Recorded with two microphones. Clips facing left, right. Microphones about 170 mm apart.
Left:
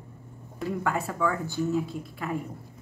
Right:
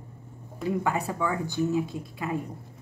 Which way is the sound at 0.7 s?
15° right (ahead or behind).